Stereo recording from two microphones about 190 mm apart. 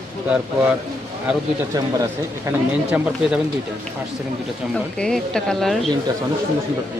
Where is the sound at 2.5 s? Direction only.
15° right (ahead or behind).